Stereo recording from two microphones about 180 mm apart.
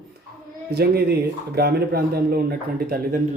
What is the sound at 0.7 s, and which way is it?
Speech, 60° right (ahead or behind).